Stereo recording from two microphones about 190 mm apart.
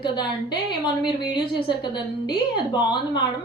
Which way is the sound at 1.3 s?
25° left (ahead or behind).